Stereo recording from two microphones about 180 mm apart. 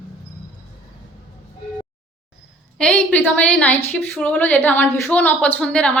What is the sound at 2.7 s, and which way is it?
A woman's voice, 5° left (ahead or behind).